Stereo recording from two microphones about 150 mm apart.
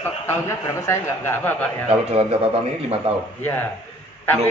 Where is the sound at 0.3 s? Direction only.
15° left (ahead or behind).